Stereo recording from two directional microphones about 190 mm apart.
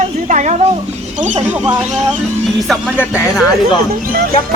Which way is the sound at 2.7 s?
Centre (ahead or behind).